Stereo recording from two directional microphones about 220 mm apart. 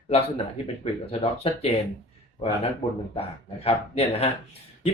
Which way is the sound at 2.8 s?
30° left (ahead or behind).